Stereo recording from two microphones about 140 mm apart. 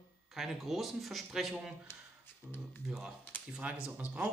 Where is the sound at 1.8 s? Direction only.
15° left (ahead or behind).